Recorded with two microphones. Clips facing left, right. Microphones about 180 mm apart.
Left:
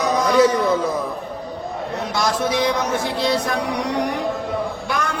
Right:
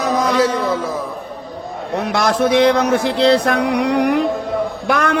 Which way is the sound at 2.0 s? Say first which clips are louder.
Right 6 dB; 60° right (ahead or behind).